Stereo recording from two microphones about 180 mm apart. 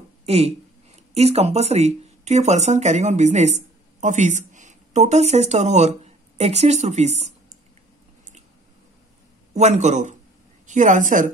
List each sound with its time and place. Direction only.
0.2 s speech: 35° right (ahead or behind)
9.5 s a man's voice: 40° right (ahead or behind)